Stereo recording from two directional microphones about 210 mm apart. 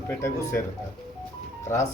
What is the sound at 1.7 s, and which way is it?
Speech, 10° left (ahead or behind).